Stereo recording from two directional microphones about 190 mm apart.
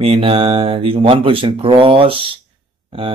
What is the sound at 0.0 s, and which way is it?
Speech, 30° right (ahead or behind).